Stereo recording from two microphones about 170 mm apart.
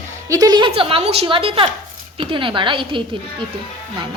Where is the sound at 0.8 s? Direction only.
35° right (ahead or behind).